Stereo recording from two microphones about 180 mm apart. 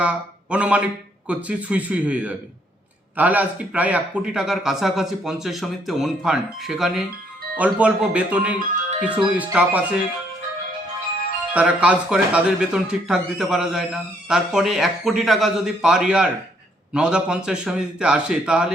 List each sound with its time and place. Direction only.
0.0 s speech: 5° right (ahead or behind)
8.5 s speech: 45° right (ahead or behind)
9.0 s speech: 5° right (ahead or behind)
11.5 s speech: 5° right (ahead or behind)